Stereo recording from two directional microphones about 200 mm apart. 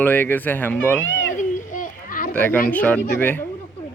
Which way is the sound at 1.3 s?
40° left (ahead or behind).